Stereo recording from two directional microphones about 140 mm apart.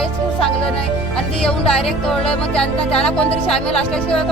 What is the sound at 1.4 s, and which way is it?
Music, 5° left (ahead or behind).